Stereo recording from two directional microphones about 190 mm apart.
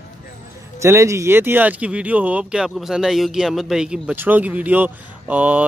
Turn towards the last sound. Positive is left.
turn(degrees=-10)  # may be behind; listen again after turning